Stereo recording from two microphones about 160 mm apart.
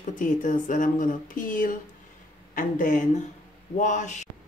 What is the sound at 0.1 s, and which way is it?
Speech, 50° left (ahead or behind).